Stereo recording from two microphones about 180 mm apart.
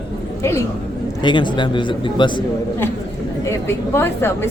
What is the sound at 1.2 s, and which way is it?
A man's voice, 25° left (ahead or behind).